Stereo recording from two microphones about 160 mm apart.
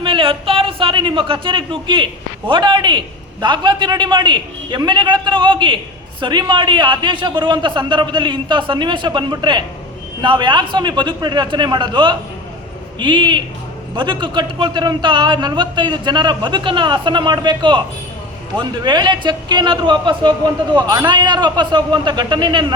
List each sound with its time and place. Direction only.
0.0 s a man's voice: 35° right (ahead or behind)